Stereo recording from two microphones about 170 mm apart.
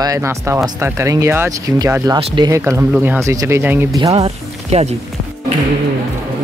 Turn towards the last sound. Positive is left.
turn(degrees=-40)  # may be behind; listen again after turning